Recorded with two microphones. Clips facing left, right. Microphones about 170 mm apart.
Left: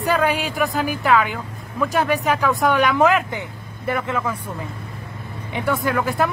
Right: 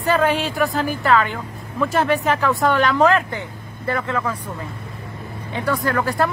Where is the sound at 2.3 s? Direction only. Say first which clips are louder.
Even; 15° left (ahead or behind).